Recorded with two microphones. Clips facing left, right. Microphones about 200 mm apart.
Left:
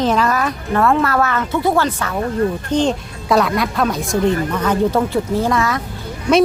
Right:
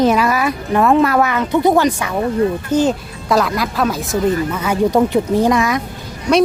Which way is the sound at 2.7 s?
5° right (ahead or behind).